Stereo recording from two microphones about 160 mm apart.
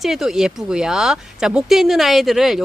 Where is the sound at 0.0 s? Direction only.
Centre (ahead or behind).